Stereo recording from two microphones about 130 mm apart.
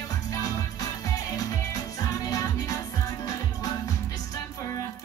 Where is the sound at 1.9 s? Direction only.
25° left (ahead or behind).